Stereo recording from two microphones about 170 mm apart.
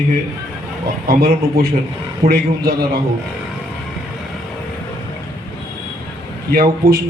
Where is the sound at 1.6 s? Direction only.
70° right (ahead or behind).